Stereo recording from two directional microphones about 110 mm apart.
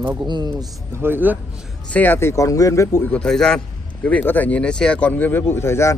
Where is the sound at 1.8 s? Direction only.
15° left (ahead or behind).